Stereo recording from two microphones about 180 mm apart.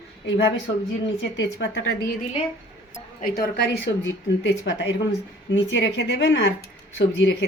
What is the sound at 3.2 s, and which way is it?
Speech, 60° left (ahead or behind).